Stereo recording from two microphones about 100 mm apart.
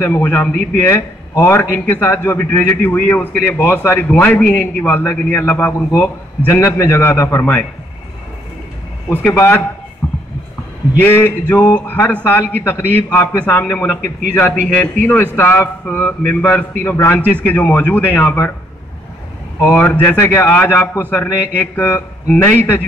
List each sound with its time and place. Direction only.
0.0 s a man's voice: 20° left (ahead or behind)
9.1 s a man's voice: 15° left (ahead or behind)
10.0 s heart sounds: 15° left (ahead or behind)
11.0 s a man's voice: 20° left (ahead or behind)
15.9 s a man's voice: 15° left (ahead or behind)
16.4 s a man's voice: 20° left (ahead or behind)
19.7 s a man's voice: 15° left (ahead or behind)